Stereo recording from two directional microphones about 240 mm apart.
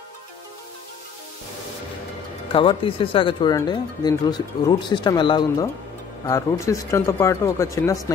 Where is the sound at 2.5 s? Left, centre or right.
Left.